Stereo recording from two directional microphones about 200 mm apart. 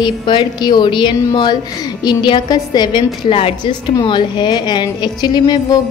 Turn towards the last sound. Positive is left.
turn(degrees=20)  # may be behind; listen again after turning